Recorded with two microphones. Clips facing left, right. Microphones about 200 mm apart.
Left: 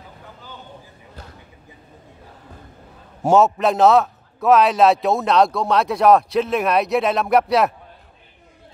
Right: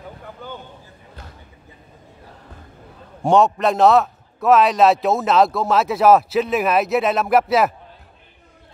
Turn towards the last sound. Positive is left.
turn(degrees=0)  # may be behind; listen again after turning